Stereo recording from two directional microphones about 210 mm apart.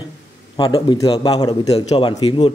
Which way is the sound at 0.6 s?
20° left (ahead or behind).